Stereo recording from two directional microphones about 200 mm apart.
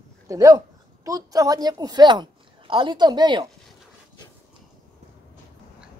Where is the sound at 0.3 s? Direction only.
15° right (ahead or behind).